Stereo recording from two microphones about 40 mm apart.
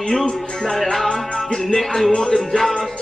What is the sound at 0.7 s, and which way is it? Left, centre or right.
Speech, centre.